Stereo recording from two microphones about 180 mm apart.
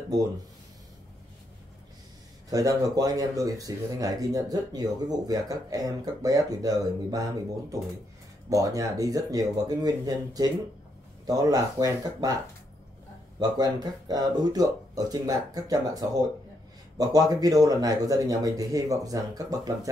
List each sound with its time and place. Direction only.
2.5 s speech: 20° right (ahead or behind)
8.5 s speech: 20° right (ahead or behind)
13.4 s speech: 20° right (ahead or behind)